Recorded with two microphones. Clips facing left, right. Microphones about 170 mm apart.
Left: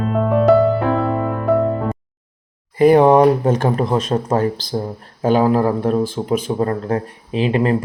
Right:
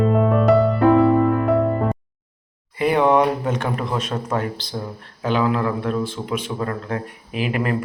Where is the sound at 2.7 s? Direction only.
40° left (ahead or behind).